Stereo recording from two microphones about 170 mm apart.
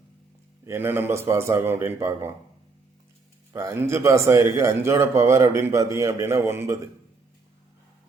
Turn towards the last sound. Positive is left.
turn(degrees=-15)  # may be behind; listen again after turning